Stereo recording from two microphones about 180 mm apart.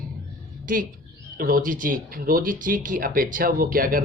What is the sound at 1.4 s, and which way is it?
Speech, 55° right (ahead or behind).